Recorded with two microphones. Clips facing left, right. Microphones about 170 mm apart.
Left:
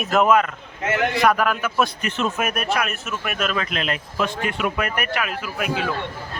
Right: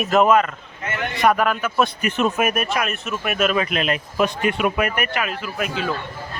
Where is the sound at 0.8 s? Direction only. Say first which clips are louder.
Left 5 dB; 90° left.